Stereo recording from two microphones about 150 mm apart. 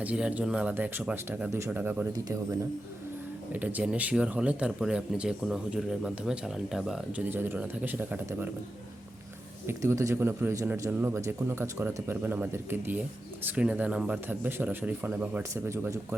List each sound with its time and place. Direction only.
0.0 s speech: 10° right (ahead or behind)
3.5 s speech: 10° right (ahead or behind)
9.6 s speech: 20° right (ahead or behind)